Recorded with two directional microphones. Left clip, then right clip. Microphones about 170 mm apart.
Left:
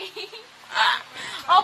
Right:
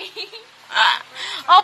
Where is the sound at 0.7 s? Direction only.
30° right (ahead or behind).